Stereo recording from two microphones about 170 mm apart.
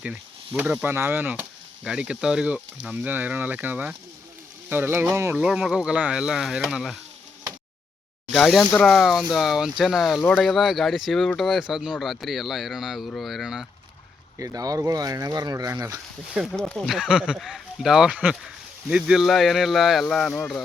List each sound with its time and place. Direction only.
0.5 s speech: 10° right (ahead or behind)
8.3 s speech: centre (ahead or behind)
14.3 s speech: 20° right (ahead or behind)
16.3 s speech: centre (ahead or behind)